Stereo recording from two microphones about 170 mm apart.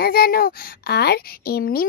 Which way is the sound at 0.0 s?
65° left (ahead or behind).